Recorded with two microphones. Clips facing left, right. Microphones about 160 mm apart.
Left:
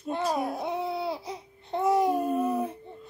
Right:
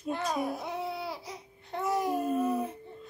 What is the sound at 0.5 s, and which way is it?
Laughter, 25° left (ahead or behind).